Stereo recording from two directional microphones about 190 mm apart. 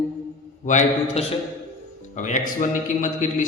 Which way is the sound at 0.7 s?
40° left (ahead or behind).